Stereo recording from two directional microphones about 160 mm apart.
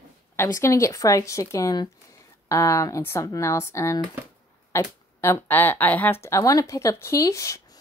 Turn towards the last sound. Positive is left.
turn(degrees=20)  # may be behind; listen again after turning